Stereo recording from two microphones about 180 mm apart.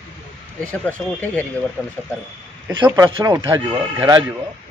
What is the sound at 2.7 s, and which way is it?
A man's voice, 25° right (ahead or behind).